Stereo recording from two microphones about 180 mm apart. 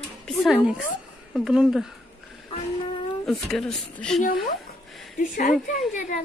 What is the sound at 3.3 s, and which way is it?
Speech, 5° left (ahead or behind).